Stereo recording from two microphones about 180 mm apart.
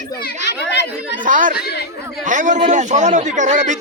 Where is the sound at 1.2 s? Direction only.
50° right (ahead or behind).